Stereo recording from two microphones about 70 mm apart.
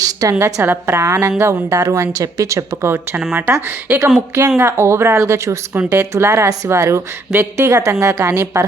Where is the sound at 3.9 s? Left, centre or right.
Centre.